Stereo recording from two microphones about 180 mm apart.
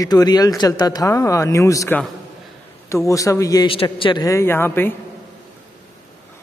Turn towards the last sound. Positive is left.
turn(degrees=10)  # may be behind; listen again after turning